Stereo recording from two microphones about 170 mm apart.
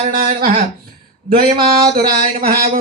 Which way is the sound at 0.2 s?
50° right (ahead or behind).